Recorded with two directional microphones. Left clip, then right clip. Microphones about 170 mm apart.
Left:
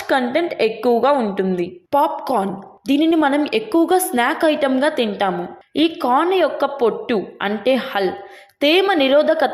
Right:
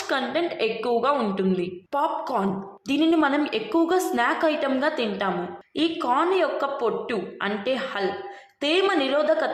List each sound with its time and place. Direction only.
0.1 s a woman's voice: 25° left (ahead or behind)